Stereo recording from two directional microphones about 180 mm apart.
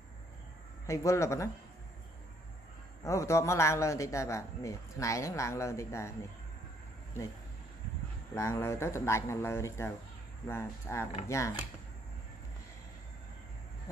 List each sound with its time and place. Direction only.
0.8 s a man's voice: 15° left (ahead or behind)
3.0 s a man's voice: 15° left (ahead or behind)
8.4 s a man's voice: 15° left (ahead or behind)